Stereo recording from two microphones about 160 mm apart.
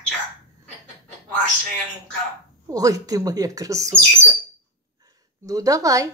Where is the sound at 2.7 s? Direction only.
20° right (ahead or behind).